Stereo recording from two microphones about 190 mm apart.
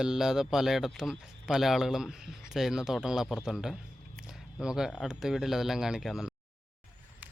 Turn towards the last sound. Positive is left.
turn(degrees=0)  # may be behind; listen again after turning